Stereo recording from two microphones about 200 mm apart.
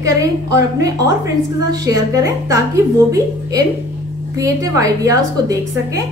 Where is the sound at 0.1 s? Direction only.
15° right (ahead or behind).